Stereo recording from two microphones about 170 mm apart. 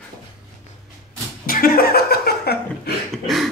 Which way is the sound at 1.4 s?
60° left (ahead or behind).